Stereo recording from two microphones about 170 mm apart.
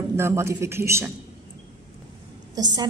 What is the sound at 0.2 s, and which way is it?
Speech, 15° right (ahead or behind).